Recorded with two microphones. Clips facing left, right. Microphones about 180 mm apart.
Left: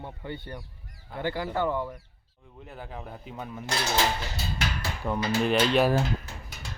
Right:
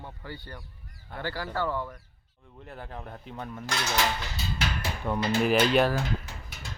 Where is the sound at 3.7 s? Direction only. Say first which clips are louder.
Left 2 dB; 30° left (ahead or behind).